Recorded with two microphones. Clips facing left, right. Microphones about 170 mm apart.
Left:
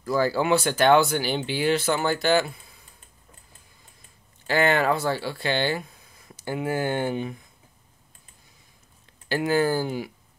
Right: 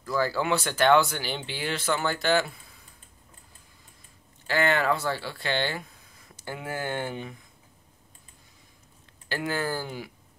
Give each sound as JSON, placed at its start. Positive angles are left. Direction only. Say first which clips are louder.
{"t": 0.2, "sound": "speech", "louder": "left 4 dB", "side_deg": 10}
{"t": 4.5, "sound": "speech", "louder": "left 3 dB", "side_deg": 15}
{"t": 9.5, "sound": "speech", "louder": "left 9 dB", "side_deg": 15}